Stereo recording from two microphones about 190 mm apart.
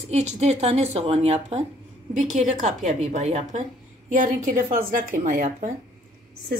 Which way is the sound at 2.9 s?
35° right (ahead or behind).